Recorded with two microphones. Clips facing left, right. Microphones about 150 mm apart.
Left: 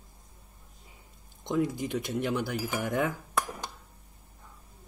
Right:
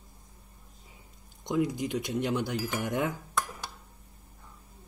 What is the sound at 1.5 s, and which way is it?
Speech, 15° right (ahead or behind).